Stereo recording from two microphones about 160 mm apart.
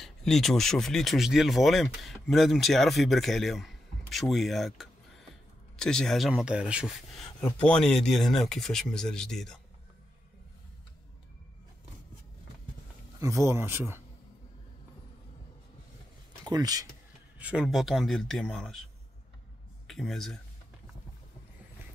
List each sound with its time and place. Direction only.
0.0 s speech: centre (ahead or behind)
7.3 s speech: 10° left (ahead or behind)
13.2 s speech: 20° right (ahead or behind)
16.4 s speech: 25° right (ahead or behind)
17.4 s speech: 5° right (ahead or behind)
19.9 s speech: centre (ahead or behind)